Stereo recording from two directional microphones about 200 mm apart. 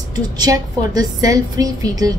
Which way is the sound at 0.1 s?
20° right (ahead or behind).